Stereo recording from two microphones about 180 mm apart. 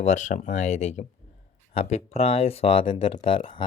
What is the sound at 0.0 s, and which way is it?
Speech, 40° left (ahead or behind).